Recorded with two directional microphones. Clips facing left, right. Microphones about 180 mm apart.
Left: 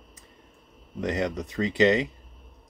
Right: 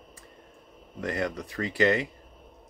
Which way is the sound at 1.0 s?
20° left (ahead or behind).